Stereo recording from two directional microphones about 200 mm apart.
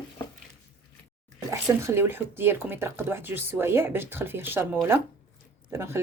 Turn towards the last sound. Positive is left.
turn(degrees=-15)  # may be behind; listen again after turning